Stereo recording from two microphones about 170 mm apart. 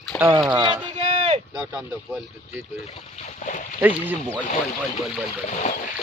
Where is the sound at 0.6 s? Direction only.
25° right (ahead or behind).